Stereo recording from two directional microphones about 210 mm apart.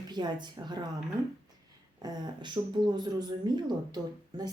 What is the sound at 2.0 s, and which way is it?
A woman's voice, 20° right (ahead or behind).